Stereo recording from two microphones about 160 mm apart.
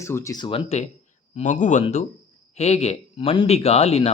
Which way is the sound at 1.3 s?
50° left (ahead or behind).